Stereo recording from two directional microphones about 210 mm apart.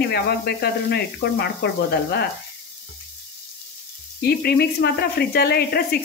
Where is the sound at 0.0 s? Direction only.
50° left (ahead or behind).